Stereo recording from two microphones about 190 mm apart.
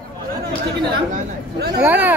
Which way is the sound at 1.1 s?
55° right (ahead or behind).